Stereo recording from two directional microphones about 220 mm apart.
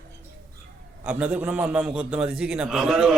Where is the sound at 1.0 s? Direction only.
5° right (ahead or behind).